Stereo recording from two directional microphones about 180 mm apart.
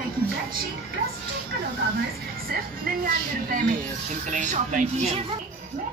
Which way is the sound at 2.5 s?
50° right (ahead or behind).